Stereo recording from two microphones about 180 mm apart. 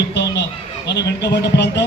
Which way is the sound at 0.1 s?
70° left (ahead or behind).